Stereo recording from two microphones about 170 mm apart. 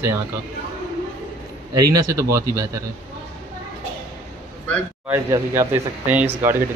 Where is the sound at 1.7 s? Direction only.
20° right (ahead or behind).